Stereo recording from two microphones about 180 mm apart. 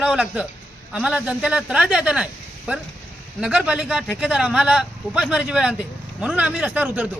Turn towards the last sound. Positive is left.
turn(degrees=-10)  # may be behind; listen again after turning